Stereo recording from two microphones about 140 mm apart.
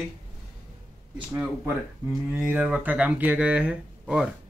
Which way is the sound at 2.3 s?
10° right (ahead or behind).